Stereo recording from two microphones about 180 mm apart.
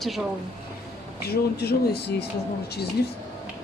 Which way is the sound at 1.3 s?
65° left (ahead or behind).